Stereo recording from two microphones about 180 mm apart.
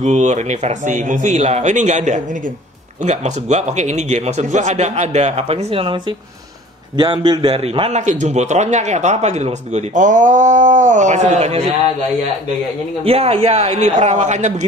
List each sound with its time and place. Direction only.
0.0 s a man's voice: 40° right (ahead or behind)
13.0 s a man's voice: 35° right (ahead or behind)